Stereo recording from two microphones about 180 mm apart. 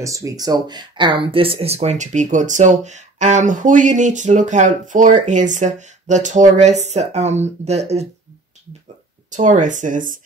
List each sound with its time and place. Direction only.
0.0 s speech: 15° right (ahead or behind); by 8.1 s 35° right (ahead or behind)
9.3 s speech: 40° right (ahead or behind)